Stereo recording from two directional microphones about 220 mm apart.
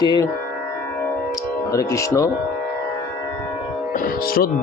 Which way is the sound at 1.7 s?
15° left (ahead or behind).